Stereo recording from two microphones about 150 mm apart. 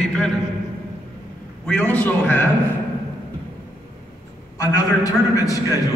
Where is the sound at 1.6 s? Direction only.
10° left (ahead or behind).